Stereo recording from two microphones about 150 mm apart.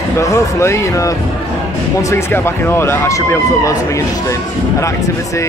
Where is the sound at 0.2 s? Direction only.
20° left (ahead or behind).